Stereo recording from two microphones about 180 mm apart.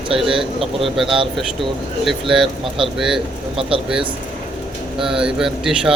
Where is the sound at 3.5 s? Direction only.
30° right (ahead or behind).